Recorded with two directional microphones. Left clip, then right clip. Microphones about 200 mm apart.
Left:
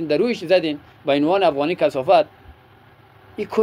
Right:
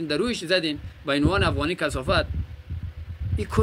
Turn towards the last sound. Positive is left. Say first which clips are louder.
# left 4 dB
turn(degrees=-25)  # may be behind; listen again after turning